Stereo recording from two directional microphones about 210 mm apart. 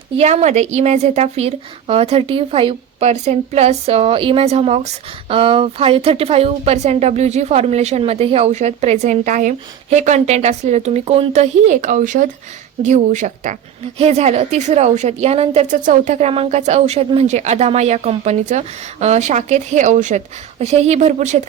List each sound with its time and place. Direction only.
0.2 s a woman's voice: 30° right (ahead or behind)